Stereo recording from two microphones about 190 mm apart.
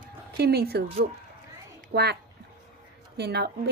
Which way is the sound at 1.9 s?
60° right (ahead or behind).